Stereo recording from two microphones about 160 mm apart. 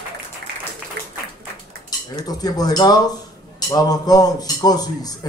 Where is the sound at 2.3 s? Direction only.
25° left (ahead or behind).